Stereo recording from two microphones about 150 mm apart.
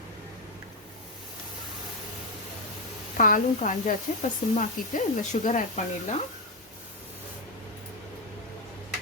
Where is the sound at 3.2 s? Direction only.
60° left (ahead or behind).